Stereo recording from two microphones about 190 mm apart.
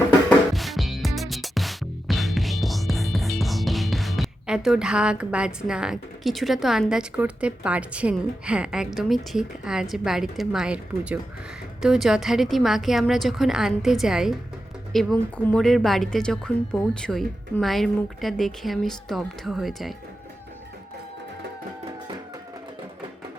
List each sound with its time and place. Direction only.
0.3 s music: centre (ahead or behind)
9.9 s speech: centre (ahead or behind)